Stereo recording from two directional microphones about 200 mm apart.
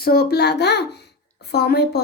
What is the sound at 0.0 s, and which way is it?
A child's voice, 50° left (ahead or behind).